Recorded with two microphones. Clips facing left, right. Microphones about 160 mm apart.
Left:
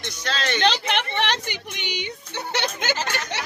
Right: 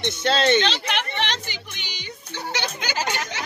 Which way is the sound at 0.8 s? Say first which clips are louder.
Left 2 dB; 55° left (ahead or behind).